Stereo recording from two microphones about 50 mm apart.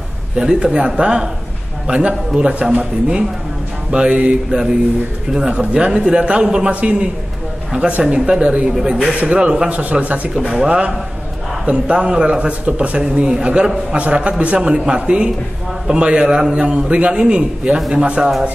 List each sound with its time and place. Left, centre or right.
0.4 s a man's voice: centre
8.1 s a man's voice: centre
10.6 s a man's voice: centre
17.7 s a man's voice: centre
18.0 s a man's voice: right